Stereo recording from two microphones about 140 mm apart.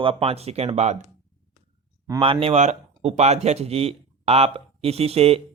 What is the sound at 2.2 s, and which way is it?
Speech, 40° right (ahead or behind).